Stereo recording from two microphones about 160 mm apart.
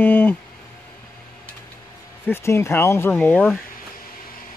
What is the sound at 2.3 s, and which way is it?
Speech, 15° left (ahead or behind).